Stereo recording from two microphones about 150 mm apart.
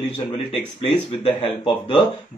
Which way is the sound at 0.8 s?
40° left (ahead or behind).